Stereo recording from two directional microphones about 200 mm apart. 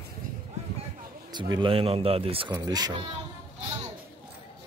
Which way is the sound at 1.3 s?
20° right (ahead or behind).